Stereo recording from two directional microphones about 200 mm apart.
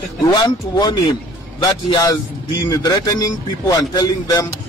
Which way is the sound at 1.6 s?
20° left (ahead or behind).